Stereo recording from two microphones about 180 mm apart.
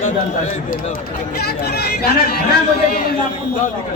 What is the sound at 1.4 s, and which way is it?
Speech, 65° left (ahead or behind).